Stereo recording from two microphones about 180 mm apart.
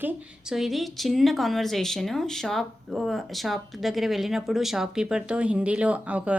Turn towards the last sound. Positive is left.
turn(degrees=-5)  # may be behind; listen again after turning